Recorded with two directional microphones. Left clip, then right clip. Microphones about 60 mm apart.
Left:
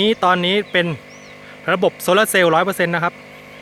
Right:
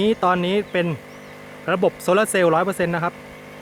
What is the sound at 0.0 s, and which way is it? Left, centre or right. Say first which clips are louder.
Speech: left 3 dB; left.